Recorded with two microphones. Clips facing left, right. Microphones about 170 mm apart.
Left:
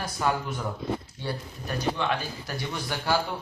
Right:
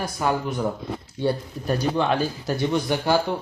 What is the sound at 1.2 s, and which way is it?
Speech, 35° right (ahead or behind).